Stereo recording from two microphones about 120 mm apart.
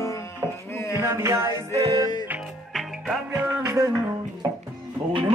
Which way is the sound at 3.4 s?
25° right (ahead or behind).